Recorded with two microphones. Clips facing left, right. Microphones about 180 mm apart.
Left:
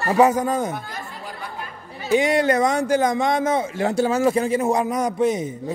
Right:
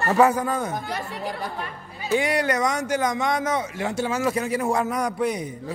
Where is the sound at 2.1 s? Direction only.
25° left (ahead or behind).